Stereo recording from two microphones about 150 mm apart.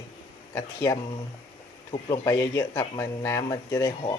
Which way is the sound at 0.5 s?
20° left (ahead or behind).